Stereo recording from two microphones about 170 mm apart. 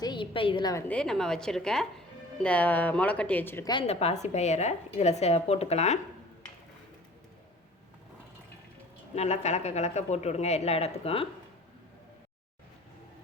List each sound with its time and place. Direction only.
0.0 s a sound: 30° left (ahead or behind)
0.9 s a woman's voice: 5° left (ahead or behind)
3.7 s a woman's voice: 35° left (ahead or behind)
9.1 s a woman's voice: 40° left (ahead or behind)